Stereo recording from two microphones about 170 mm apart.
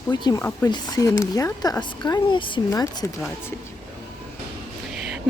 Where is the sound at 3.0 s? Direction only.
15° left (ahead or behind).